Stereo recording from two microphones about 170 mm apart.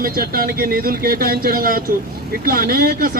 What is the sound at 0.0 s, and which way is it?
Speech, 60° right (ahead or behind).